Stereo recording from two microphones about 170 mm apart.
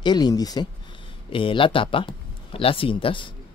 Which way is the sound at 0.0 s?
25° left (ahead or behind).